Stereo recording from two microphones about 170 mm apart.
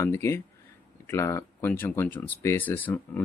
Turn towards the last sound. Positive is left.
turn(degrees=10)  # may be behind; listen again after turning